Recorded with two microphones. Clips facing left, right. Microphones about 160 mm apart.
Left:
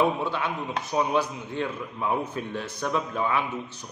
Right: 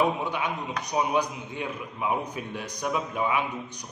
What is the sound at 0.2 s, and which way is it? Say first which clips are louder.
A man's voice: left 1 dB; 15° right (ahead or behind).